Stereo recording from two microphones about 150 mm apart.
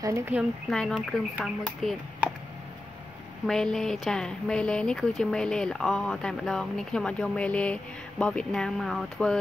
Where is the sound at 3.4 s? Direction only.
5° left (ahead or behind).